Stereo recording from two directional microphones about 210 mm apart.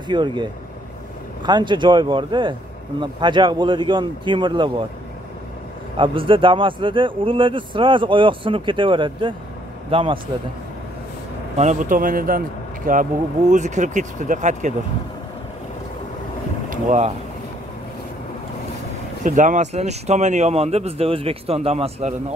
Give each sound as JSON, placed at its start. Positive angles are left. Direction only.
{"t": 0.1, "sound": "speech", "side_deg": -20}
{"t": 5.9, "sound": "speech", "side_deg": -25}
{"t": 11.5, "sound": "speech", "side_deg": -35}
{"t": 16.7, "sound": "speech", "side_deg": -35}
{"t": 19.2, "sound": "speech", "side_deg": -35}